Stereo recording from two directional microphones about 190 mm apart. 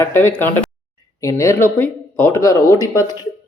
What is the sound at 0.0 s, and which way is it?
Speech, 10° left (ahead or behind).